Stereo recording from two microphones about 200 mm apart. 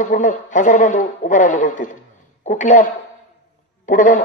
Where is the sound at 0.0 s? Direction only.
40° left (ahead or behind).